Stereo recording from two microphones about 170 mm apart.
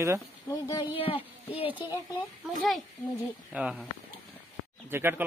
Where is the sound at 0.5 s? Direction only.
20° left (ahead or behind).